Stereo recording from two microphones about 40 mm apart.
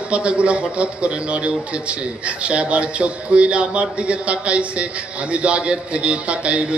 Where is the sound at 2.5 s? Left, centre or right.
Right.